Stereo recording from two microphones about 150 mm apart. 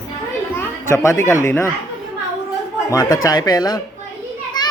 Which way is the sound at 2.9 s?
25° left (ahead or behind).